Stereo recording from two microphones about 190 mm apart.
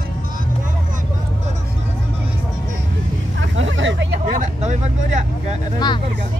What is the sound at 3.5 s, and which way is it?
Vehicle, 80° right.